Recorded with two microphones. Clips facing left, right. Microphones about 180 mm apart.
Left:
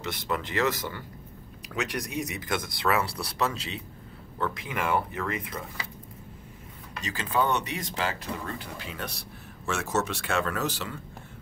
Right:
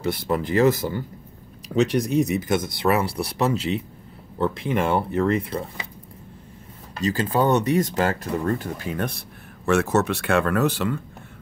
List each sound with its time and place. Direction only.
0.0 s speech: 30° right (ahead or behind)
6.9 s speech: 35° right (ahead or behind); by 9.2 s 50° right (ahead or behind)
9.7 s speech: 60° right (ahead or behind)